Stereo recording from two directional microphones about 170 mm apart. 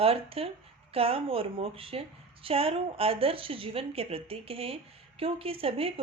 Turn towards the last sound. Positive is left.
turn(degrees=-35)  # may be behind; listen again after turning